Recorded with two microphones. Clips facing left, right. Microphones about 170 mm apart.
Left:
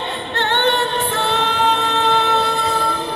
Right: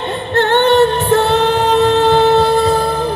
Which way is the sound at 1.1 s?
40° right (ahead or behind).